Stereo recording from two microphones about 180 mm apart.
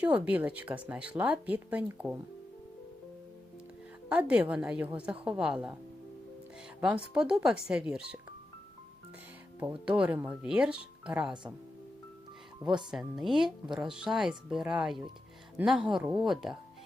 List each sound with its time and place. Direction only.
0.0 s speech: 10° right (ahead or behind)
4.1 s speech: 5° right (ahead or behind)
6.8 s speech: 5° right (ahead or behind)
9.8 s speech: 5° right (ahead or behind)
12.9 s speech: centre (ahead or behind)